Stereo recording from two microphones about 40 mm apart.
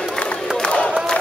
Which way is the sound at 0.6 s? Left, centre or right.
Left.